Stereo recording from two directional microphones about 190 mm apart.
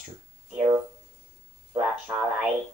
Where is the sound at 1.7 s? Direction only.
10° right (ahead or behind).